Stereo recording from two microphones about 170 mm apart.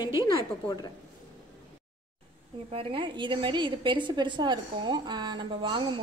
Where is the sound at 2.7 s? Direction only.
30° right (ahead or behind).